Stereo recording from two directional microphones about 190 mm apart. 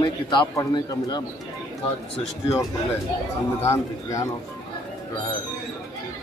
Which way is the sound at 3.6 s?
15° left (ahead or behind).